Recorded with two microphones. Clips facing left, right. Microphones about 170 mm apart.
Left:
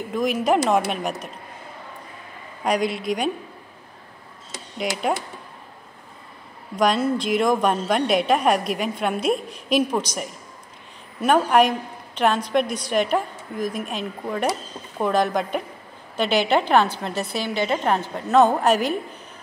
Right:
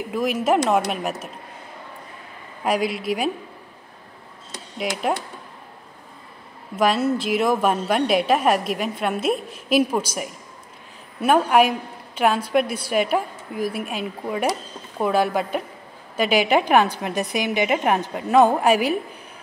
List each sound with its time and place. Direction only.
0.1 s a woman's voice: 5° right (ahead or behind)
2.6 s a woman's voice: 5° right (ahead or behind)
4.5 s a sound: 5° left (ahead or behind)
6.8 s a woman's voice: 5° right (ahead or behind)